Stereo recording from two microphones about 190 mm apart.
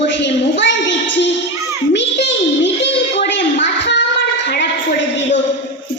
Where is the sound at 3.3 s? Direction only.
70° left (ahead or behind).